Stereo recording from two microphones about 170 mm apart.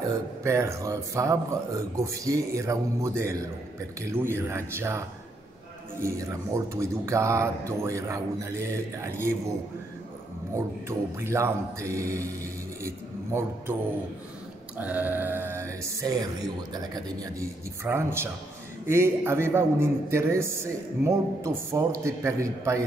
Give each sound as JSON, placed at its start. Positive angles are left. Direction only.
{"t": 0.4, "sound": "a man's voice", "side_deg": -15}
{"t": 6.0, "sound": "a man's voice", "side_deg": -15}
{"t": 10.5, "sound": "a man's voice", "side_deg": -15}
{"t": 14.8, "sound": "a man's voice", "side_deg": -10}